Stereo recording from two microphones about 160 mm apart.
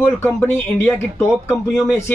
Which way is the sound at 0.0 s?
15° left (ahead or behind).